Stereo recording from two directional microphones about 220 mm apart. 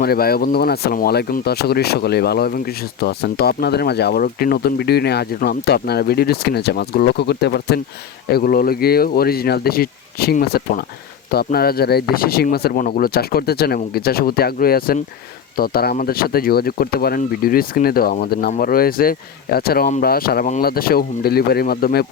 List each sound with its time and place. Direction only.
0.0 s speech: 45° left (ahead or behind)